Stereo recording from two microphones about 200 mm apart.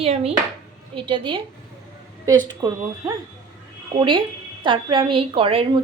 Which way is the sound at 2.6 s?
20° right (ahead or behind).